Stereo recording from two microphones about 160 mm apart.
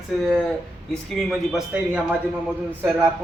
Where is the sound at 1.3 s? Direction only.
5° right (ahead or behind).